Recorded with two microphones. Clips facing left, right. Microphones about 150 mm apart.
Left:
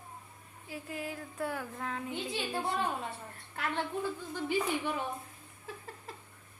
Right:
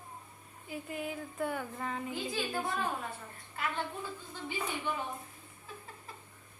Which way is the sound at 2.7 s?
25° left (ahead or behind).